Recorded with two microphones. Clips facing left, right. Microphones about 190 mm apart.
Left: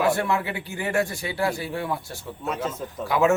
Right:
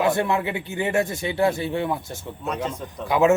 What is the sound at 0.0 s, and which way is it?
Speech, 20° right (ahead or behind).